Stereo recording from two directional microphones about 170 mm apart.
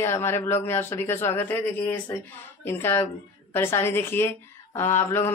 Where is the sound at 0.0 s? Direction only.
15° left (ahead or behind).